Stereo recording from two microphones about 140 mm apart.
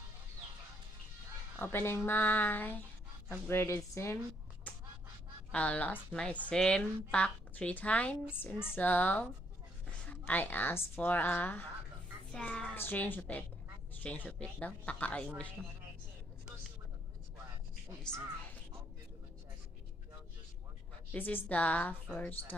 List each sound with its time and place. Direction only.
1.6 s a woman's voice: 15° left (ahead or behind)
4.7 s finger snapping: 10° left (ahead or behind)
5.5 s a woman's voice: 10° left (ahead or behind)
9.8 s a sound: 10° left (ahead or behind)
11.0 s a woman's voice: 10° left (ahead or behind)
21.1 s a woman's voice: 15° left (ahead or behind)